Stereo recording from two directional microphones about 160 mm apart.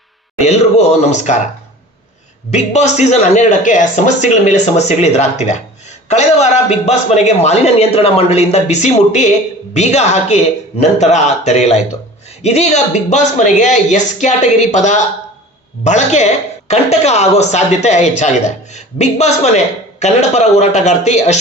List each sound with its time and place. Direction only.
0.3 s a man's voice: 45° left (ahead or behind)
2.5 s a man's voice: 45° left (ahead or behind)